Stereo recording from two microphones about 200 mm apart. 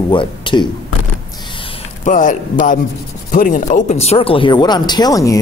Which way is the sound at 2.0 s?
40° left (ahead or behind).